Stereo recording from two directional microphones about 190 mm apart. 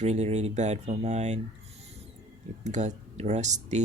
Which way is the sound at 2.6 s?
40° right (ahead or behind).